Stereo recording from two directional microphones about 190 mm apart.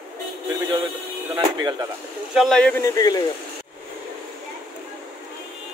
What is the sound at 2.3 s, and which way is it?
Speech, centre (ahead or behind).